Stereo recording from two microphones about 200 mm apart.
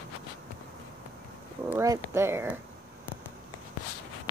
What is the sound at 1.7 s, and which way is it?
Speech, 15° right (ahead or behind).